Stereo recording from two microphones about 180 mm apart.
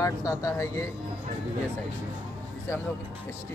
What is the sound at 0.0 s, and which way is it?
Speech, 20° left (ahead or behind).